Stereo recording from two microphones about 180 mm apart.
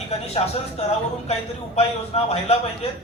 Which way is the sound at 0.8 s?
35° left (ahead or behind).